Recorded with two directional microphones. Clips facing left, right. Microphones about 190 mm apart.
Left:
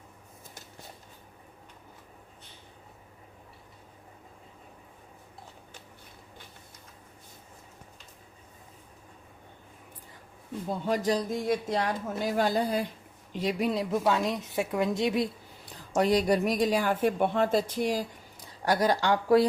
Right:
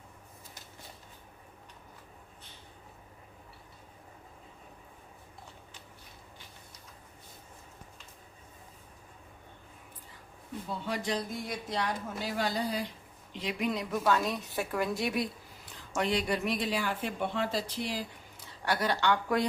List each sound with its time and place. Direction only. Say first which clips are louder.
10.7 s speech: left 7 dB; 45° left (ahead or behind)
13.3 s speech: left 5 dB; 40° left (ahead or behind)
14.0 s a woman's voice: left 2 dB; 20° left (ahead or behind)
16.0 s speech: left 7 dB; 40° left (ahead or behind)